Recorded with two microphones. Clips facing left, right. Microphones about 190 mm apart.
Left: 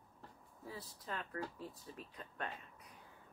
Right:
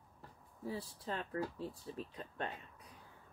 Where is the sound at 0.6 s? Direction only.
30° right (ahead or behind).